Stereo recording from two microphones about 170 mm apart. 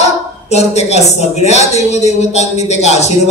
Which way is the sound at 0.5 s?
40° left (ahead or behind).